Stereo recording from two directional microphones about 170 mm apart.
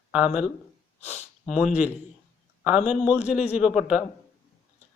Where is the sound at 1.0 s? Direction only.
40° left (ahead or behind).